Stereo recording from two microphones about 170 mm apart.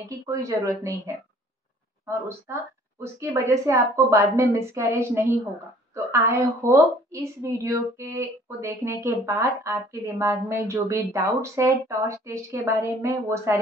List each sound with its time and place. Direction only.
0.1 s a woman's voice: 20° right (ahead or behind)